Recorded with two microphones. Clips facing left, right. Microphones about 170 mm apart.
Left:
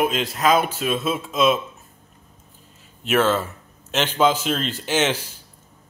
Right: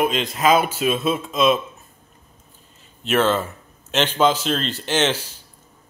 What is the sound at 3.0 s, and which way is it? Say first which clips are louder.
A man's voice: even; 5° left (ahead or behind).